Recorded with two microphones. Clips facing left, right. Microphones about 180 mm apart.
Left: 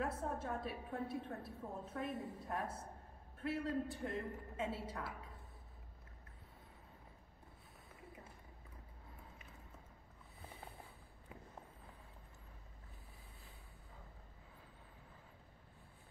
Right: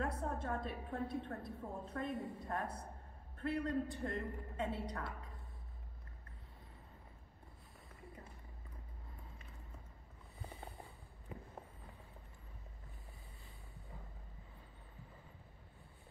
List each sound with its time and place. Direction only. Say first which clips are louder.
0.0 s a woman's voice: right 1 dB; 5° left (ahead or behind)
10.4 s a sound: right 3 dB; centre (ahead or behind)
11.3 s walk: right 5 dB; centre (ahead or behind)